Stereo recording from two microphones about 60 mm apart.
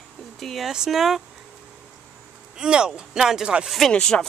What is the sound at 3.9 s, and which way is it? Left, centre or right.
Speech, centre.